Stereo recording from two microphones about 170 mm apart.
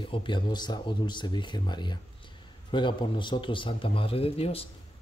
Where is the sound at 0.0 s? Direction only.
30° left (ahead or behind).